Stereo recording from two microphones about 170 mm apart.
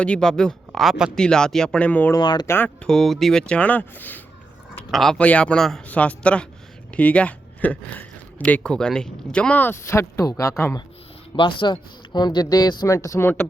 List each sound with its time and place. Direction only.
0.0 s speech: 5° left (ahead or behind)
2.1 s speech: 25° left (ahead or behind)
2.5 s speech: 10° left (ahead or behind)
11.3 s speech: 30° left (ahead or behind); by 13.5 s 15° left (ahead or behind)